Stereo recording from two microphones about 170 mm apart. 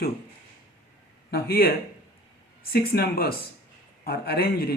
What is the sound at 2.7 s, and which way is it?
Speech, 65° left (ahead or behind).